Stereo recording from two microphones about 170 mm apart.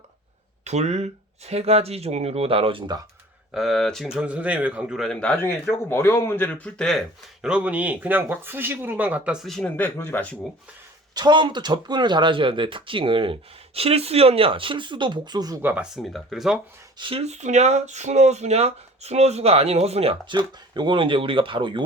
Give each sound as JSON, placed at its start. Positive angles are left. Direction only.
{"t": 0.6, "sound": "speech", "side_deg": -40}
{"t": 3.5, "sound": "a man's voice", "side_deg": 0}
{"t": 7.4, "sound": "speech", "side_deg": -5}
{"t": 11.1, "sound": "speech", "side_deg": -25}
{"t": 15.6, "sound": "a man's voice", "side_deg": -5}
{"t": 17.0, "sound": "speech", "side_deg": -35}